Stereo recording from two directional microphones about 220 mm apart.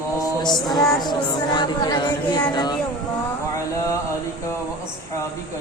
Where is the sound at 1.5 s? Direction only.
20° left (ahead or behind).